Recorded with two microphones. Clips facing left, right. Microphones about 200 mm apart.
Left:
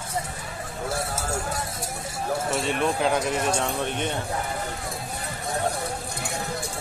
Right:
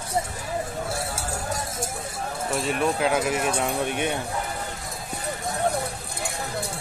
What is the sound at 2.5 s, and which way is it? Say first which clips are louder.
Speech: right 3 dB; centre (ahead or behind).